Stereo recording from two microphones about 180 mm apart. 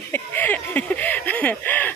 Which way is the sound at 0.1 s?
10° left (ahead or behind).